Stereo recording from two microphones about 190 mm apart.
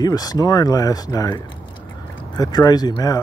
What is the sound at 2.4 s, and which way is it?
Speech, 20° left (ahead or behind).